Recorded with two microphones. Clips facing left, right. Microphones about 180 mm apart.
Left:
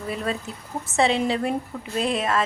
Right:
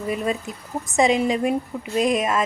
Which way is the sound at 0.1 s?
15° right (ahead or behind).